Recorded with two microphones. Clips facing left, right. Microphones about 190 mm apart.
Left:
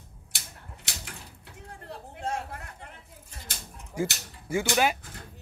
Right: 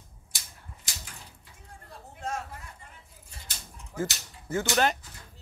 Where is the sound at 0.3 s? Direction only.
65° left (ahead or behind).